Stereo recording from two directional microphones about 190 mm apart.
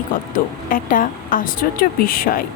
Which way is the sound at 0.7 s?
45° left (ahead or behind).